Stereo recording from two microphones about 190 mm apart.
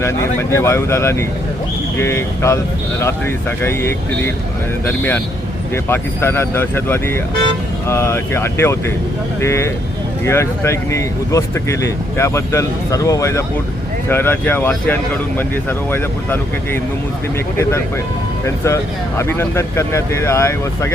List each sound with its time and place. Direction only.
0.0 s speech: 15° left (ahead or behind)
17.6 s speech: 15° left (ahead or behind)